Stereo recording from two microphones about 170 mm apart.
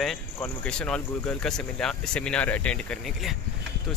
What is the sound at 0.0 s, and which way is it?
Speech, 5° left (ahead or behind).